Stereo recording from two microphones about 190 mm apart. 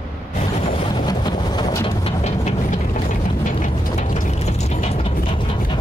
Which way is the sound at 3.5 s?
40° left (ahead or behind).